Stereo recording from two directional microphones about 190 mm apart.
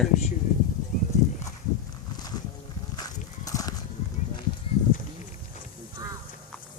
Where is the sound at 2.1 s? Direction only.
20° left (ahead or behind).